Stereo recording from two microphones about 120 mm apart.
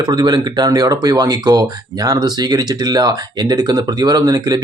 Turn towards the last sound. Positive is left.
turn(degrees=-35)  # may be behind; listen again after turning